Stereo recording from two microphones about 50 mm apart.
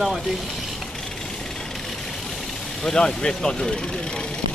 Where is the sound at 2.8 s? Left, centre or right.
Centre.